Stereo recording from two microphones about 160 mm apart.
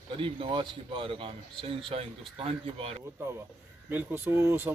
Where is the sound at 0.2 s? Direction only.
30° right (ahead or behind).